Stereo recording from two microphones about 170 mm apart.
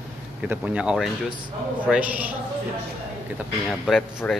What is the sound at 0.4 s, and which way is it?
A man's voice, 10° right (ahead or behind).